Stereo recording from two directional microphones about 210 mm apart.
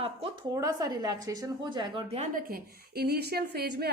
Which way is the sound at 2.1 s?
45° right (ahead or behind).